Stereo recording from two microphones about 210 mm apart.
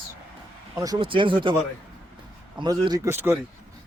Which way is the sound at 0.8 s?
20° right (ahead or behind).